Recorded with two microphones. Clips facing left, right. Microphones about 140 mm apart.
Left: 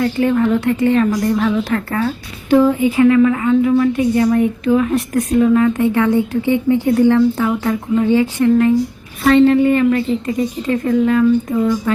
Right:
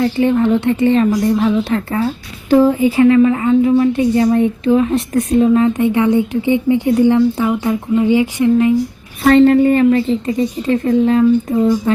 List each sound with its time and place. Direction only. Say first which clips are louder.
0.0 s a woman's voice: right 1 dB; 20° right (ahead or behind)
2.5 s a woman's voice: right 1 dB; 30° right (ahead or behind); by 8.7 s 15° right (ahead or behind)
9.2 s a woman's voice: right 2 dB; 45° right (ahead or behind); by 11.9 s 25° right (ahead or behind)